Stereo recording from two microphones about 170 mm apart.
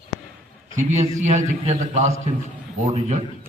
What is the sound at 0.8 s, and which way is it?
A man's voice, 45° right (ahead or behind).